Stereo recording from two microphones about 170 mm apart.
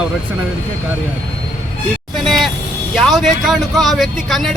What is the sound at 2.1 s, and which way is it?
Vehicle, centre (ahead or behind).